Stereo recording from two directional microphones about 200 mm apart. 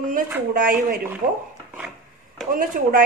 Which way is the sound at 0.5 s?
45° right (ahead or behind).